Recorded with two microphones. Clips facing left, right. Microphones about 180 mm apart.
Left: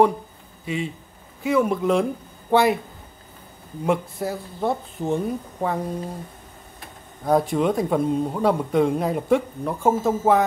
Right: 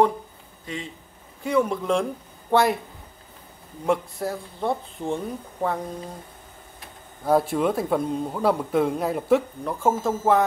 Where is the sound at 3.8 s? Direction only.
Centre (ahead or behind).